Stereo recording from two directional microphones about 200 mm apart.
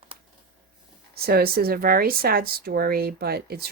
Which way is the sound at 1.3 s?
50° right (ahead or behind).